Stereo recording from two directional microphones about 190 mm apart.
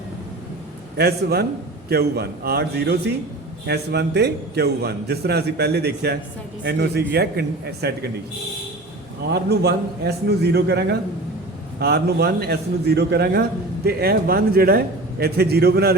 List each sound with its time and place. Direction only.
0.9 s a man's voice: 60° right (ahead or behind)
9.3 s a man's voice: 55° right (ahead or behind)